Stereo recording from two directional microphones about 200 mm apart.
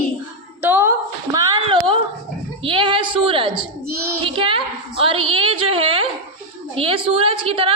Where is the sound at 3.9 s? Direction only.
10° right (ahead or behind).